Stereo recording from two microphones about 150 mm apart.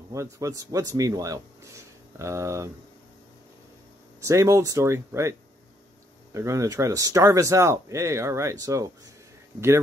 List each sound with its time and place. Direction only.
0.1 s a man's voice: 20° right (ahead or behind)
4.2 s a man's voice: 20° right (ahead or behind)
6.3 s a man's voice: 20° right (ahead or behind)